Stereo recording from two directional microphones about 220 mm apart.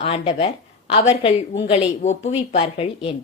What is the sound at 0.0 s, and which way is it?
A woman's voice, 25° left (ahead or behind).